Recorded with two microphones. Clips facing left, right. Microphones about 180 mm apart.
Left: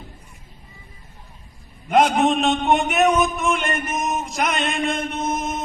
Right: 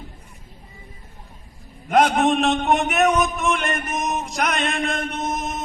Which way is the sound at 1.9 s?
Centre (ahead or behind).